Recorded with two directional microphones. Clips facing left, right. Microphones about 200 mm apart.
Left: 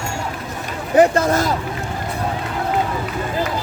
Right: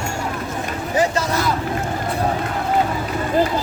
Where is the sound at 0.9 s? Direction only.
55° left (ahead or behind).